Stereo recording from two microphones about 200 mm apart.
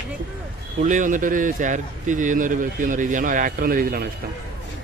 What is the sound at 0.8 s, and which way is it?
A man's voice, 40° right (ahead or behind).